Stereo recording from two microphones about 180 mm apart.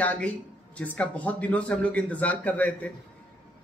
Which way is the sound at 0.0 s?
10° left (ahead or behind).